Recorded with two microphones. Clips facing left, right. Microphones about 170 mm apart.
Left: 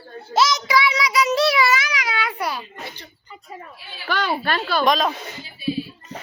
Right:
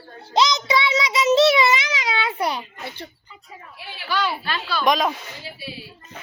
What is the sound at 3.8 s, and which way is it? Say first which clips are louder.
Speech: right 2 dB; 70° right (ahead or behind).